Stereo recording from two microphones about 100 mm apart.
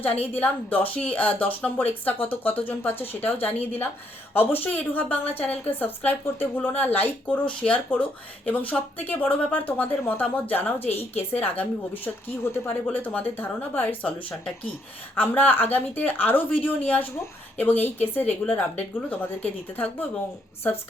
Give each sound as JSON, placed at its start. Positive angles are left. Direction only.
{"t": 0.0, "sound": "a woman's voice", "side_deg": 20}